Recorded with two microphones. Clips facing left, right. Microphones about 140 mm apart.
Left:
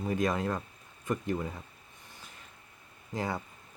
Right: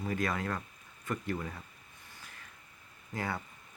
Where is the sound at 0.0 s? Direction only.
20° left (ahead or behind).